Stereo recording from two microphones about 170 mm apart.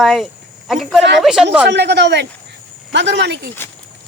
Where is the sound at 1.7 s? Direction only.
80° right.